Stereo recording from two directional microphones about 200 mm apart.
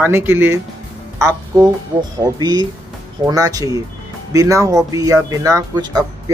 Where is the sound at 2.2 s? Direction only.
20° right (ahead or behind).